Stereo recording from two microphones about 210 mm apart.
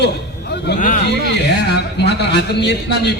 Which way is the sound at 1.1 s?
55° left (ahead or behind).